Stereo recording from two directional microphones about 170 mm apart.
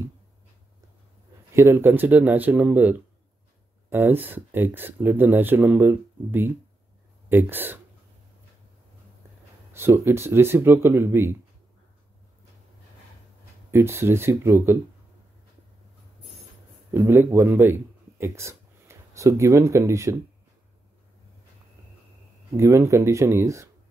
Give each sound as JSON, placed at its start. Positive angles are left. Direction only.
{"t": 1.5, "sound": "speech", "side_deg": -15}
{"t": 9.7, "sound": "speech", "side_deg": -15}
{"t": 13.7, "sound": "speech", "side_deg": -15}
{"t": 16.9, "sound": "a man's voice", "side_deg": -15}
{"t": 22.6, "sound": "speech", "side_deg": -15}